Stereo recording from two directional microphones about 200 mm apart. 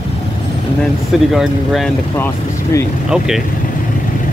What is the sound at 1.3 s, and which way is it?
Speech, centre (ahead or behind).